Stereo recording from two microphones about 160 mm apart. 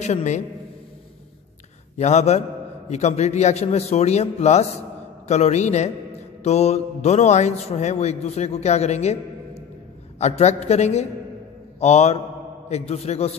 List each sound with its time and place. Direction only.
0.0 s a man's voice: 45° left (ahead or behind)
2.0 s a man's voice: 45° left (ahead or behind)